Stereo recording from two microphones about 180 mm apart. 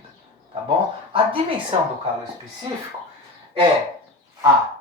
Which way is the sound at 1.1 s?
30° right (ahead or behind).